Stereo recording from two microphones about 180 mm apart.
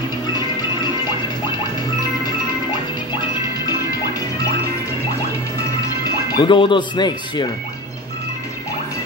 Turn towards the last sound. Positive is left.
turn(degrees=25)  # may be behind; listen again after turning